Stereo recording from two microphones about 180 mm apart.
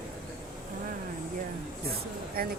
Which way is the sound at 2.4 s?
55° right (ahead or behind).